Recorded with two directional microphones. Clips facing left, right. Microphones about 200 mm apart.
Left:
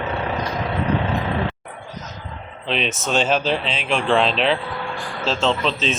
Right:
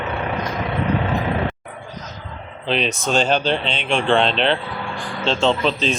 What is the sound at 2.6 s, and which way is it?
A man's voice, centre (ahead or behind).